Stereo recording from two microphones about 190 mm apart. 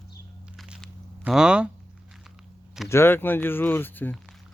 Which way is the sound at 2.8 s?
15° left (ahead or behind).